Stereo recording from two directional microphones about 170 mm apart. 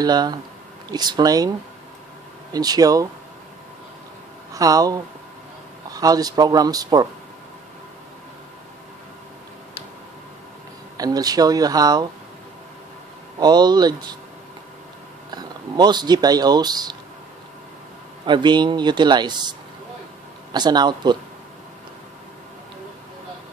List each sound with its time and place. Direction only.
0.0 s speech: 25° right (ahead or behind)
2.5 s speech: 20° right (ahead or behind)
4.6 s speech: 20° right (ahead or behind)
11.0 s speech: 20° right (ahead or behind)
13.4 s speech: 25° right (ahead or behind)
15.3 s speech: 25° right (ahead or behind)
18.2 s speech: 25° right (ahead or behind)
20.5 s speech: 25° right (ahead or behind)